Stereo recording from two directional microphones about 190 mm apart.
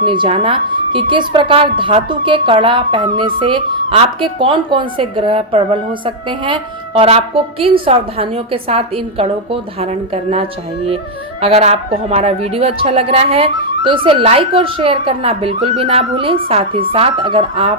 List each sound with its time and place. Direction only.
0.0 s a woman's voice: 25° right (ahead or behind)